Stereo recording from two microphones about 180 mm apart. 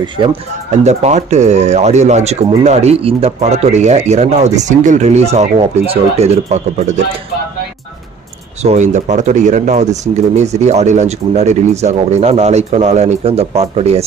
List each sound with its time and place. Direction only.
0.0 s speech: 25° right (ahead or behind)
0.7 s speech: 40° right (ahead or behind)
8.6 s speech: 40° right (ahead or behind)